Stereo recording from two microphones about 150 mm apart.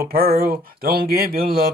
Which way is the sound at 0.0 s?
90° right.